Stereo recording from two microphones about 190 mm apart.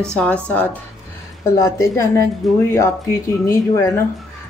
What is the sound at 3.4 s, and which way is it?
Speech, 15° left (ahead or behind).